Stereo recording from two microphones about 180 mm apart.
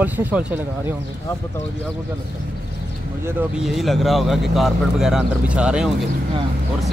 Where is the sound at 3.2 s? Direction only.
Centre (ahead or behind).